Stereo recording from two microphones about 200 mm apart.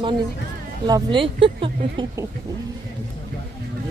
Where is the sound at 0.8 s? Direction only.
20° right (ahead or behind).